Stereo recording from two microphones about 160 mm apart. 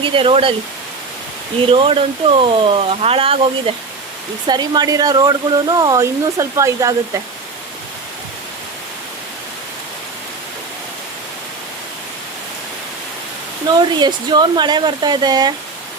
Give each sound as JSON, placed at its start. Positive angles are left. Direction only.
{"t": 0.0, "sound": "speech", "side_deg": -30}
{"t": 1.7, "sound": "speech", "side_deg": -35}
{"t": 13.7, "sound": "speech", "side_deg": -25}